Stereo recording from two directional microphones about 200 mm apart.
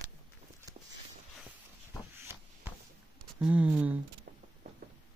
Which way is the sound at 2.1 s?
10° right (ahead or behind).